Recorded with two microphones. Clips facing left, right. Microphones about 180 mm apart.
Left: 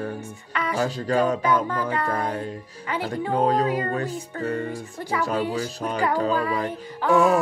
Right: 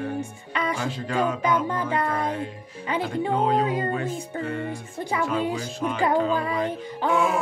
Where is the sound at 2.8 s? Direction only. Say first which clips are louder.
Right 2 dB; 20° right (ahead or behind).